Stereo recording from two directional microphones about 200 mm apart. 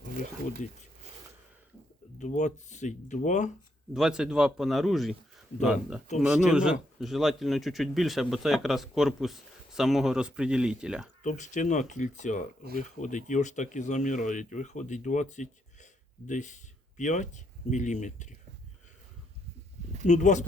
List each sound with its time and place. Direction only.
0.6 s speech: 40° left (ahead or behind)
2.1 s speech: 35° left (ahead or behind)
3.9 s a man's voice: 5° right (ahead or behind)
11.2 s speech: 40° left (ahead or behind)
20.1 s speech: 35° left (ahead or behind)